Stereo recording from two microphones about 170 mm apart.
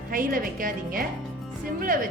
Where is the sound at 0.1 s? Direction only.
55° right (ahead or behind).